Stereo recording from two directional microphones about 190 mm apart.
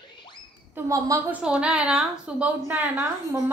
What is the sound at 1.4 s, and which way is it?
A woman's voice, 5° right (ahead or behind).